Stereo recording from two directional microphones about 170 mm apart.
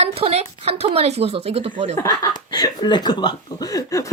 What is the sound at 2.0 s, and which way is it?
Speech, 25° left (ahead or behind).